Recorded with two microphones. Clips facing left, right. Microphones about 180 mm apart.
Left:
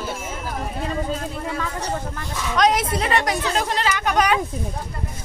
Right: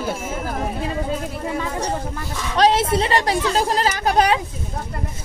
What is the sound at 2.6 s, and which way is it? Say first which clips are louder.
Speech: right 3 dB; 30° right (ahead or behind).